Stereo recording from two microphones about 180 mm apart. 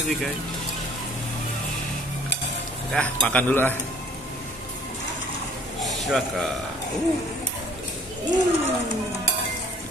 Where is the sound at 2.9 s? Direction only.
10° left (ahead or behind).